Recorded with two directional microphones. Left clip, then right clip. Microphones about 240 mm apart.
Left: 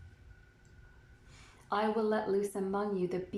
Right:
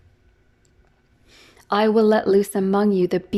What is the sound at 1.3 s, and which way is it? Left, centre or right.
A woman's voice, right.